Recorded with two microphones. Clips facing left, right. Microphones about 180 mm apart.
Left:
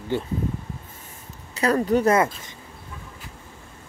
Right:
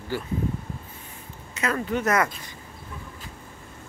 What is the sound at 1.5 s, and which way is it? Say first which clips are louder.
Speech: left 6 dB; 35° left (ahead or behind).